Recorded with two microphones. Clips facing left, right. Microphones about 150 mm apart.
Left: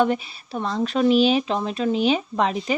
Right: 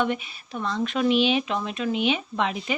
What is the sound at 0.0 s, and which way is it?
Speech, 35° left (ahead or behind).